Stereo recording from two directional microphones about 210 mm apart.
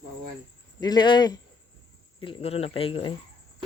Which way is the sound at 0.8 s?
20° left (ahead or behind).